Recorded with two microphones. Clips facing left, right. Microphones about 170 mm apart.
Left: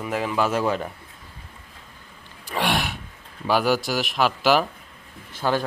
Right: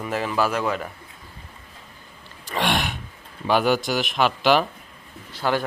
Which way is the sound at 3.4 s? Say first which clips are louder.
Right 1 dB; 5° left (ahead or behind).